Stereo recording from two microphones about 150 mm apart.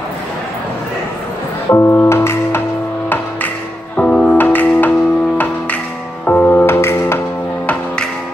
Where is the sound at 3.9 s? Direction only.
10° left (ahead or behind).